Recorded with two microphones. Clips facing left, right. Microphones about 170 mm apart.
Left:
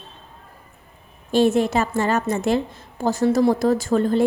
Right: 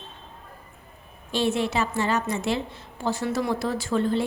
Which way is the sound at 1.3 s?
45° left (ahead or behind).